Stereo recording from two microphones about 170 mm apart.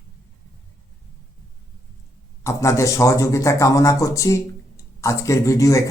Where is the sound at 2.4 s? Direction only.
15° left (ahead or behind).